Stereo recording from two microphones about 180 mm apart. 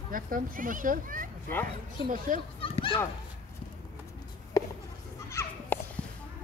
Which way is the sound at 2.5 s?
30° left (ahead or behind).